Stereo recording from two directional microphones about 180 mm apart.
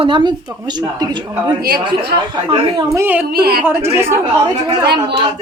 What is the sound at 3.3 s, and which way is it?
Speech, 60° right (ahead or behind).